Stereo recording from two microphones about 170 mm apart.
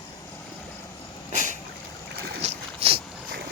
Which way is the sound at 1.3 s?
45° right (ahead or behind).